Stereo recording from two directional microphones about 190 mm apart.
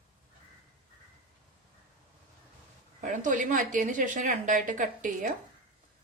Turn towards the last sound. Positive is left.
turn(degrees=-45)  # may be behind; listen again after turning